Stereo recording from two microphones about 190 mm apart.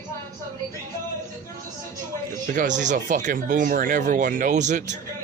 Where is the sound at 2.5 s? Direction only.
40° right (ahead or behind).